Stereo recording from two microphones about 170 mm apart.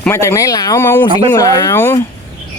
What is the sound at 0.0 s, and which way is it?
Speech, 15° left (ahead or behind).